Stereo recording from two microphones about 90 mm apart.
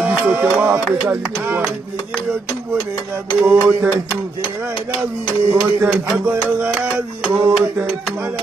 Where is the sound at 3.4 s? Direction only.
20° right (ahead or behind).